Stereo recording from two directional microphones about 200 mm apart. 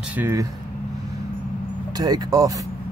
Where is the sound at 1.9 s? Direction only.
20° right (ahead or behind).